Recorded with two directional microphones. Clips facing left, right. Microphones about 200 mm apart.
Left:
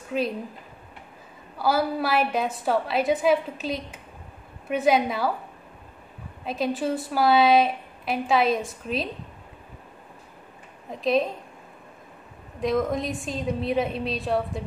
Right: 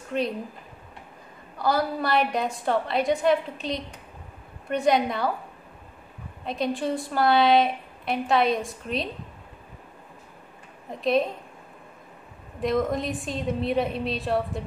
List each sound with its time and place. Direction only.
0.1 s a woman's voice: 5° left (ahead or behind)
1.6 s a woman's voice: 5° left (ahead or behind)
6.4 s a woman's voice: 5° left (ahead or behind)
10.9 s a woman's voice: centre (ahead or behind)
12.5 s a woman's voice: centre (ahead or behind)